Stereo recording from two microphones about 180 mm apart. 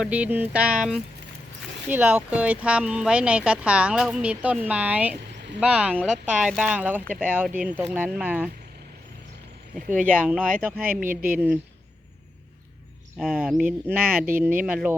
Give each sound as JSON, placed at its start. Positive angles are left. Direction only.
{"t": 0.0, "sound": "speech", "side_deg": -10}
{"t": 9.7, "sound": "speech", "side_deg": -50}
{"t": 10.3, "sound": "speech", "side_deg": 5}
{"t": 11.0, "sound": "speech", "side_deg": -50}
{"t": 13.1, "sound": "speech", "side_deg": -5}
{"t": 14.0, "sound": "speech", "side_deg": -55}
{"t": 14.6, "sound": "speech", "side_deg": -10}